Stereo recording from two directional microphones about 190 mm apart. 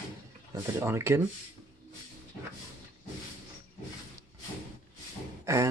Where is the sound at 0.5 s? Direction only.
15° right (ahead or behind).